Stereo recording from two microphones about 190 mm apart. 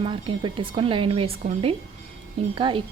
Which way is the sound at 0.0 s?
25° right (ahead or behind).